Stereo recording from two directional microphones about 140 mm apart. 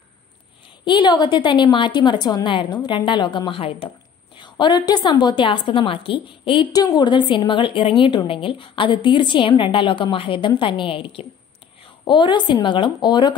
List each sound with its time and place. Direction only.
0.8 s a woman's voice: 35° left (ahead or behind)